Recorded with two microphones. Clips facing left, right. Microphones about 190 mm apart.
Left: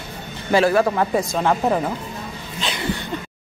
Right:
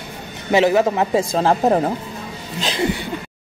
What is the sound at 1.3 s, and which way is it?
Speech, 35° right (ahead or behind).